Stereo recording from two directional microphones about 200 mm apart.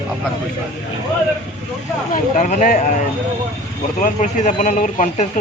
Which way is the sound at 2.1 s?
40° left (ahead or behind).